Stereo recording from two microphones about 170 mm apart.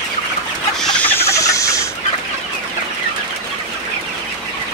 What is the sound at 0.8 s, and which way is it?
Rodents, 10° left (ahead or behind).